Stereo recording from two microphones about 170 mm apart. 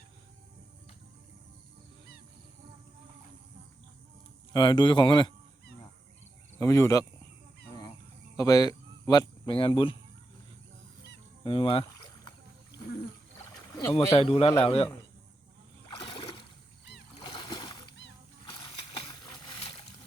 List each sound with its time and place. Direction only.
4.5 s speech: 25° left (ahead or behind)
6.6 s speech: 20° left (ahead or behind)
8.4 s speech: 20° left (ahead or behind)
11.4 s speech: 35° left (ahead or behind)
13.9 s speech: 35° left (ahead or behind)
16.0 s a sound: 30° left (ahead or behind)
17.2 s splash: 30° left (ahead or behind)
18.5 s a sound: 25° left (ahead or behind)